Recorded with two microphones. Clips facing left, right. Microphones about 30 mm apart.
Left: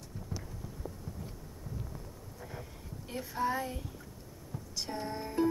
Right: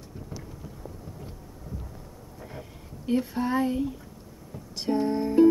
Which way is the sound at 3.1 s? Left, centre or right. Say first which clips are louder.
Right 7 dB; right.